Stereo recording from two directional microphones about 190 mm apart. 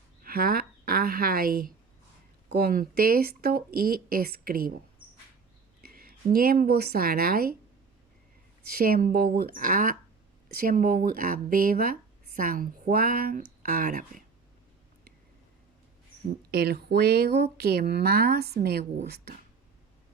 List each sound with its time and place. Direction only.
0.2 s speech: 50° right (ahead or behind)
5.8 s a sound: 50° right (ahead or behind)
6.3 s speech: 50° right (ahead or behind)
8.6 s speech: 50° right (ahead or behind)
16.5 s speech: 55° right (ahead or behind)